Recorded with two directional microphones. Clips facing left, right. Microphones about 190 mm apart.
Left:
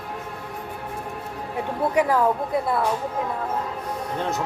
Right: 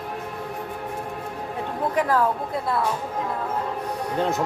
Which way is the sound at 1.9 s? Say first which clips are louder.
Left 2 dB; 10° left (ahead or behind).